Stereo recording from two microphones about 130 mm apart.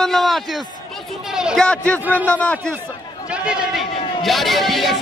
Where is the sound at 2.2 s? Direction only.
10° left (ahead or behind).